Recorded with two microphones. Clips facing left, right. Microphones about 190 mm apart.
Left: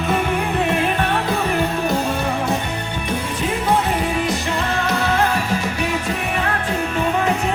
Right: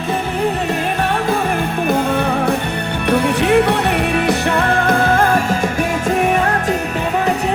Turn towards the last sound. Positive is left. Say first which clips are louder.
# right 5 dB
turn(degrees=-50)  # may be behind; listen again after turning